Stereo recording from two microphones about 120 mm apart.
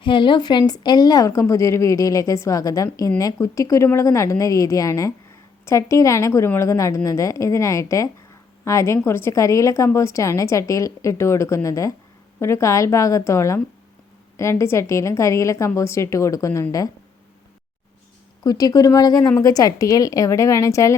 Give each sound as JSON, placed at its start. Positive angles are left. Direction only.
{"t": 0.0, "sound": "a woman's voice", "side_deg": 40}
{"t": 18.4, "sound": "a woman's voice", "side_deg": 30}